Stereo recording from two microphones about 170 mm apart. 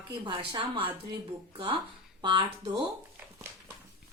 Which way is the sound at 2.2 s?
30° right (ahead or behind).